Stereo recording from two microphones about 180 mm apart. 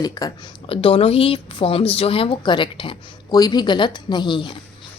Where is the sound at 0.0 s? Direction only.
20° left (ahead or behind).